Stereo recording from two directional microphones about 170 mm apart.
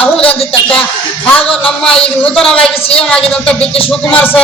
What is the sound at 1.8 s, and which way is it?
A man's voice, 5° left (ahead or behind).